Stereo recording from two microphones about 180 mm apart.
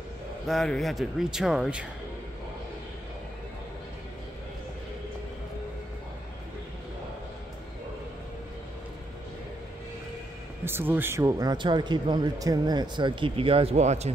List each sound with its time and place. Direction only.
0.5 s a man's voice: centre (ahead or behind)
10.6 s speech: 10° right (ahead or behind); by 14.1 s 40° right (ahead or behind)